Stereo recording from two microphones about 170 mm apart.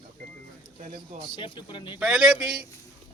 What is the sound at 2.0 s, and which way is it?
Speech, 5° right (ahead or behind).